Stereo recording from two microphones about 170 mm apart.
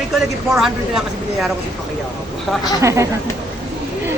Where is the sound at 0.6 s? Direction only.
Centre (ahead or behind).